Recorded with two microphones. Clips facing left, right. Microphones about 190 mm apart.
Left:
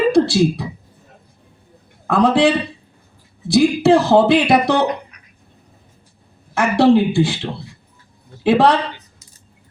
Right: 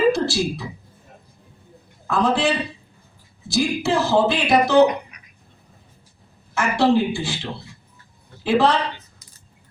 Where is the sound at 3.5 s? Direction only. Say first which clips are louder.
Left 8 dB; 60° left (ahead or behind).